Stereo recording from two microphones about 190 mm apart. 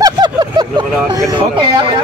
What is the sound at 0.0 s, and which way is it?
Vehicle, 20° right (ahead or behind).